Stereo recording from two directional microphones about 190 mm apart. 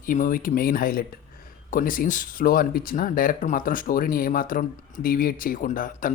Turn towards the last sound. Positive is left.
turn(degrees=45)  # may be behind; listen again after turning